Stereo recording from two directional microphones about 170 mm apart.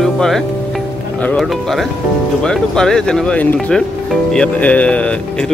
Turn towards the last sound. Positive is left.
turn(degrees=5)  # may be behind; listen again after turning